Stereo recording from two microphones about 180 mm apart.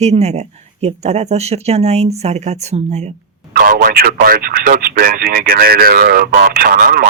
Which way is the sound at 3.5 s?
50° right (ahead or behind).